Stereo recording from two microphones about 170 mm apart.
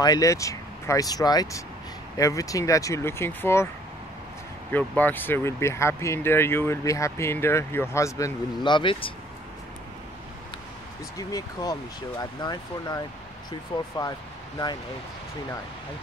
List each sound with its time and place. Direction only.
0.0 s speech: 20° left (ahead or behind)
4.7 s speech: 10° left (ahead or behind); by 9.1 s 30° left (ahead or behind)
11.1 s speech: 20° left (ahead or behind)